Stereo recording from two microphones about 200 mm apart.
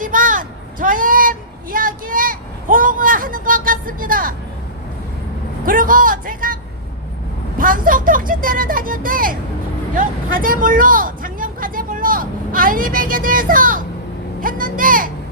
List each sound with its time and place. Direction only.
0.0 s a sound: 40° right (ahead or behind)
5.6 s a man's voice: 45° right (ahead or behind)
7.6 s speech: 45° right (ahead or behind)
9.9 s vehicle: 45° right (ahead or behind)
14.4 s speech: 45° right (ahead or behind)